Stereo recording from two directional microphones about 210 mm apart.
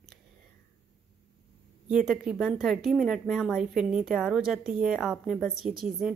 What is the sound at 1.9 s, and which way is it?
A woman's voice, 5° right (ahead or behind).